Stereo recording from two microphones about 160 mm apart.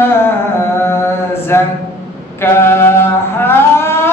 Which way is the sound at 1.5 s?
15° left (ahead or behind).